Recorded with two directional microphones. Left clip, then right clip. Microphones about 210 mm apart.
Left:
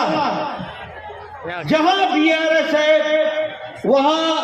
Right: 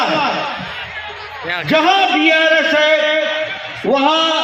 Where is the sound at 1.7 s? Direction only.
65° left (ahead or behind).